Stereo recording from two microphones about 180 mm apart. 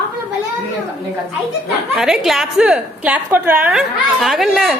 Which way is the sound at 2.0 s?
Centre (ahead or behind).